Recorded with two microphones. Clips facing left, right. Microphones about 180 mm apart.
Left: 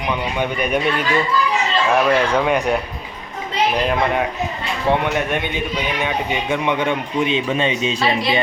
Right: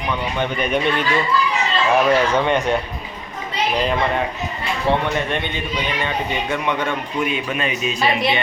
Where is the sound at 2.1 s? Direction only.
10° left (ahead or behind).